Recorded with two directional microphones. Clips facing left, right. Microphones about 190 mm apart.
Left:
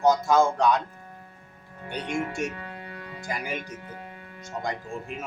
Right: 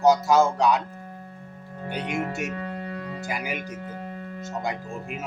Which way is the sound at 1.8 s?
40° right (ahead or behind).